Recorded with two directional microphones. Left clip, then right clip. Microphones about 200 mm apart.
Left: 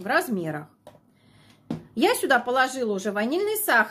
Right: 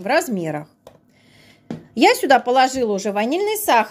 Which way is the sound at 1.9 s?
25° right (ahead or behind).